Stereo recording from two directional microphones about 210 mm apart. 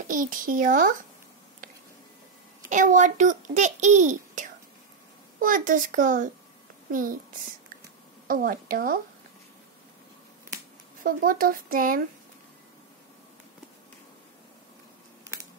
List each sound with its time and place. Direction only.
0.1 s a child's voice: 40° right (ahead or behind)
2.7 s a child's voice: 35° right (ahead or behind)
8.3 s a woman's voice: 40° right (ahead or behind)
11.1 s a child's voice: 40° right (ahead or behind)